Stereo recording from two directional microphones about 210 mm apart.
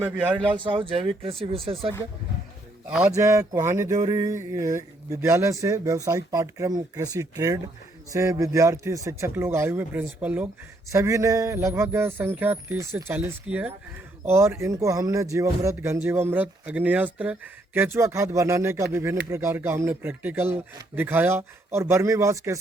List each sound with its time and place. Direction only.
0.0 s speech: 5° right (ahead or behind)
0.5 s speech: 25° right (ahead or behind)
2.9 s speech: 10° right (ahead or behind)